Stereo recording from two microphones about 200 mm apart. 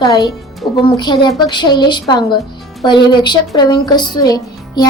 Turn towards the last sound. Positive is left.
turn(degrees=20)  # may be behind; listen again after turning